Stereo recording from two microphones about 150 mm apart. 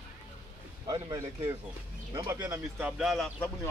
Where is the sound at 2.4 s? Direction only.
10° right (ahead or behind).